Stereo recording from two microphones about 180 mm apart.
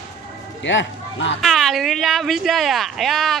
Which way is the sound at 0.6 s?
90° left.